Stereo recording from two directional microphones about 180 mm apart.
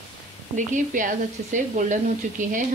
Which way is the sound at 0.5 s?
45° right (ahead or behind).